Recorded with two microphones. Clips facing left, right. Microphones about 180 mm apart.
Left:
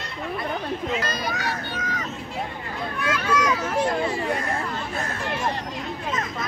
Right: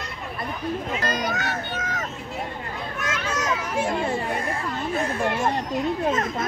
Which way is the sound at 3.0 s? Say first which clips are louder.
Left 5 dB; 45° right (ahead or behind).